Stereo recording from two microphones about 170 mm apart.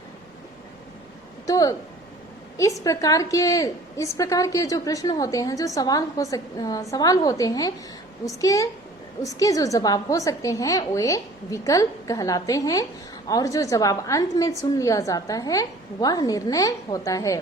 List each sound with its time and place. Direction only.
1.5 s a woman's voice: 20° left (ahead or behind)